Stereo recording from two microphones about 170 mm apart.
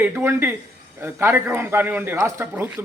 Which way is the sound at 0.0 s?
15° right (ahead or behind).